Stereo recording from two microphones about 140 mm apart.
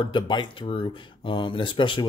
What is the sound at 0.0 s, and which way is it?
Speech, 35° left (ahead or behind).